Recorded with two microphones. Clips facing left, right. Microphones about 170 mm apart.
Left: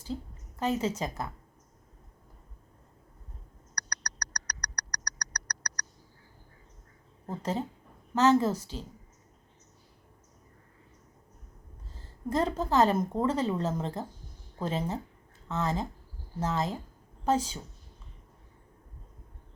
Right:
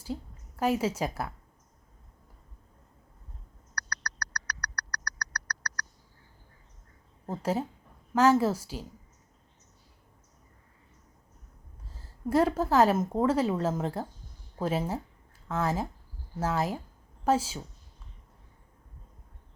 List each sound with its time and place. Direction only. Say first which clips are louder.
0.0 s a woman's voice: even; 10° right (ahead or behind)
3.8 s a sound: right 3 dB; 15° left (ahead or behind)
8.1 s a woman's voice: right 1 dB; 10° right (ahead or behind)
11.9 s a woman's voice: right 4 dB; 10° right (ahead or behind)